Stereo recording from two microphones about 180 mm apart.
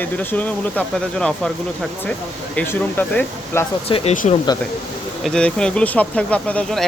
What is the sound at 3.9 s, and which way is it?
Speech, 35° left (ahead or behind).